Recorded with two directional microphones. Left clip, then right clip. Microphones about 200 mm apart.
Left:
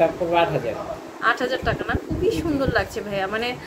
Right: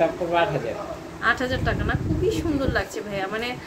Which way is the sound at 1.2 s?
5° left (ahead or behind).